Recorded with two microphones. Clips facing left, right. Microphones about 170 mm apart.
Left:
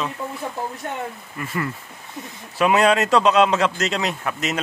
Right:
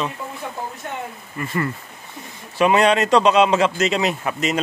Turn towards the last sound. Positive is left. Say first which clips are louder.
# right 3 dB
turn(degrees=0)  # may be behind; listen again after turning